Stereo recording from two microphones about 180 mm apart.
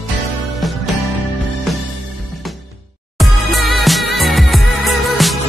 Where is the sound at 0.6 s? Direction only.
Centre (ahead or behind).